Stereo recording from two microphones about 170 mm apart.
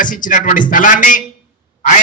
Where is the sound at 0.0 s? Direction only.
50° left (ahead or behind).